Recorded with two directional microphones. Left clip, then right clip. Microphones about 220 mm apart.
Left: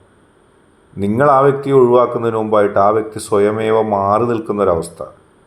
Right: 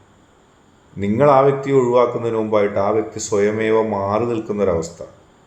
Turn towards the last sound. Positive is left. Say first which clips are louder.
# left 4 dB
turn(degrees=25)  # may be behind; listen again after turning